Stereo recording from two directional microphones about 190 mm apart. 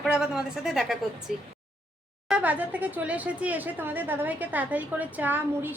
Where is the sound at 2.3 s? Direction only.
10° right (ahead or behind).